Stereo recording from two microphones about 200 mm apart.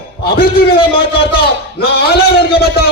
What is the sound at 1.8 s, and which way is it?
A man's voice, 50° left (ahead or behind).